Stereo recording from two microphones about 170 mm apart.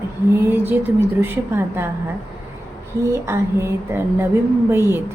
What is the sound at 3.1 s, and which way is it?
Speech, 15° right (ahead or behind).